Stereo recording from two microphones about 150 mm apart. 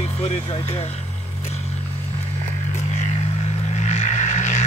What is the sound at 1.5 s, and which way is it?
Music, 45° left (ahead or behind).